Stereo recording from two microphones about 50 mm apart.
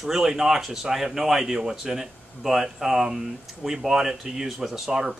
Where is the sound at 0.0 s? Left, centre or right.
Centre.